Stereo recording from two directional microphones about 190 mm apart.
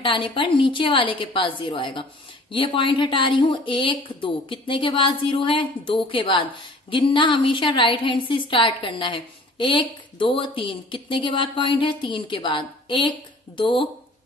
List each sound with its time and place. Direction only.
0.0 s a woman's voice: 25° left (ahead or behind)